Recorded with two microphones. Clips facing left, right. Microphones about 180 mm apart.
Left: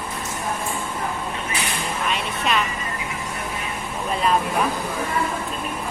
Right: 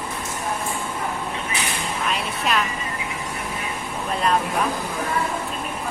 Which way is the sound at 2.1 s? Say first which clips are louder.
Even; centre (ahead or behind).